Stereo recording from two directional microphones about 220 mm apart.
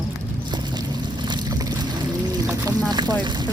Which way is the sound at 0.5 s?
20° right (ahead or behind).